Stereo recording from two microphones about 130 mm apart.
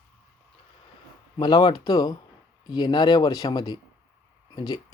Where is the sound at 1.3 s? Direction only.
35° left (ahead or behind).